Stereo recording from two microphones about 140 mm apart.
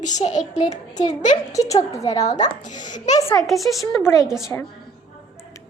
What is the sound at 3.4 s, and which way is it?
Speech, centre (ahead or behind).